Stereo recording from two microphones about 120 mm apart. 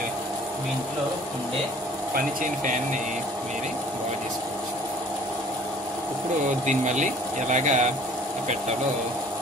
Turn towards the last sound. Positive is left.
turn(degrees=-85)